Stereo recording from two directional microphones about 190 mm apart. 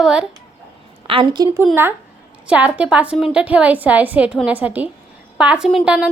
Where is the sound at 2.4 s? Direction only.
5° right (ahead or behind).